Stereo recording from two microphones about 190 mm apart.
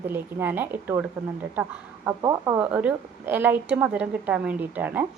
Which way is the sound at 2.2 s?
20° right (ahead or behind).